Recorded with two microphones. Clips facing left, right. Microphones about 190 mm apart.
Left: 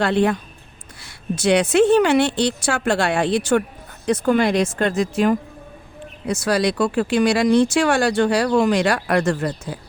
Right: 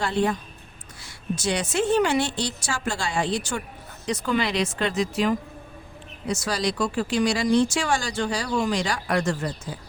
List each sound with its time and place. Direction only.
0.0 s speech: 65° left (ahead or behind)